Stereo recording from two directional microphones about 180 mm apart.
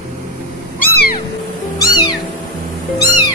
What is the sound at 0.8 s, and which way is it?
Cat, 55° left (ahead or behind).